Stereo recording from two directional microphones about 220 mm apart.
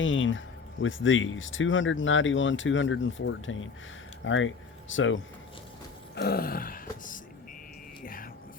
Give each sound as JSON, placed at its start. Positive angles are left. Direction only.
{"t": 0.0, "sound": "speech", "side_deg": 60}
{"t": 6.1, "sound": "speech", "side_deg": 45}
{"t": 8.0, "sound": "music", "side_deg": 40}